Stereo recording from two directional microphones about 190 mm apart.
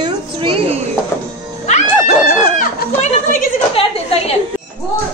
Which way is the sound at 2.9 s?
45° left (ahead or behind).